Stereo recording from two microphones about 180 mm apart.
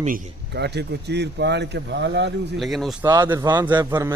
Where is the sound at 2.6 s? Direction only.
Centre (ahead or behind).